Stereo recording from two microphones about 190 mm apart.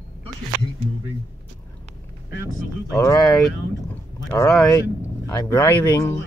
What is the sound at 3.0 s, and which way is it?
Speech, 20° left (ahead or behind).